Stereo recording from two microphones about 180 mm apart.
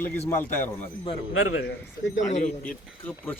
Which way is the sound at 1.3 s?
90° left.